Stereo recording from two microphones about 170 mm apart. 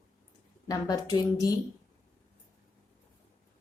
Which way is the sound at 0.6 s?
20° left (ahead or behind).